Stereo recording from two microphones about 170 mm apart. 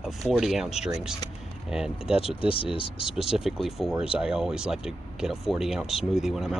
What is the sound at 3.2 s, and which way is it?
Speech, centre (ahead or behind).